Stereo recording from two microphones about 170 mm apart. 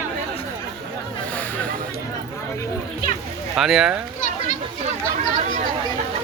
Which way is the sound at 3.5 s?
5° right (ahead or behind).